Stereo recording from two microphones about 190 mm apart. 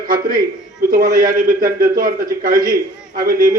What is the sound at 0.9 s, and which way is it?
A man's voice, 50° right (ahead or behind).